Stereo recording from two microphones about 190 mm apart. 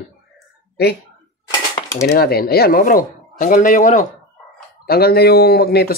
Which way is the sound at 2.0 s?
55° left (ahead or behind).